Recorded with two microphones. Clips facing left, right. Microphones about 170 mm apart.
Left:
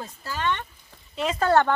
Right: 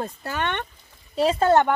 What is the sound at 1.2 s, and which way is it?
Speech, 30° right (ahead or behind).